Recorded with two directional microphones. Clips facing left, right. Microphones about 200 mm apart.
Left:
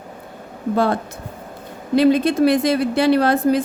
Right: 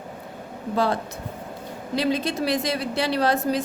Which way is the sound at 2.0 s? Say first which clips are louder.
Left 10 dB; 55° left (ahead or behind).